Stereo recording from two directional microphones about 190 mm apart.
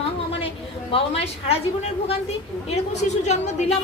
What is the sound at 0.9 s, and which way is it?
A woman's voice, 30° left (ahead or behind).